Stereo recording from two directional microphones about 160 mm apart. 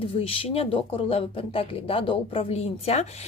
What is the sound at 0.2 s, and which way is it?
Speech, 35° left (ahead or behind).